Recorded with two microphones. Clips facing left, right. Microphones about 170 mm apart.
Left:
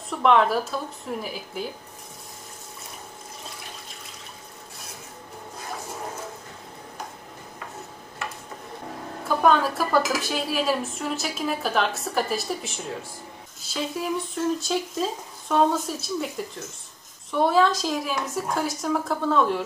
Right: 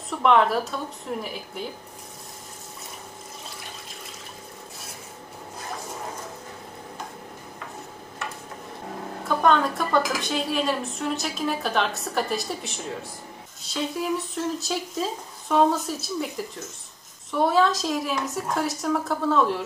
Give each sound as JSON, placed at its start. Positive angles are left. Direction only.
{"t": 0.1, "sound": "speech", "side_deg": 0}
{"t": 9.4, "sound": "speech", "side_deg": 5}